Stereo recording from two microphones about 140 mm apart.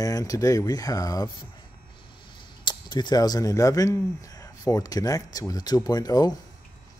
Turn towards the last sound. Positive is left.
turn(degrees=25)  # may be behind; listen again after turning